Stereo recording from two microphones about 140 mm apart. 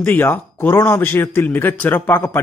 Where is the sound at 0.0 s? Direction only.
15° left (ahead or behind).